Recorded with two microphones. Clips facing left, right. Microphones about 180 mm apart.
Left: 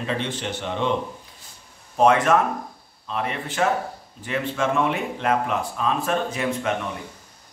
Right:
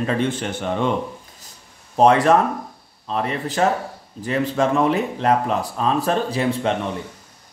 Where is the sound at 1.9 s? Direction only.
35° right (ahead or behind).